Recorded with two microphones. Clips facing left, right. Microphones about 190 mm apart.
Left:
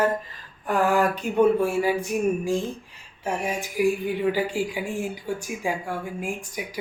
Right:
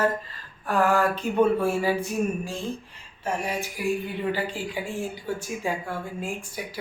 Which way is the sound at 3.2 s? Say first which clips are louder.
Left 1 dB; 15° left (ahead or behind).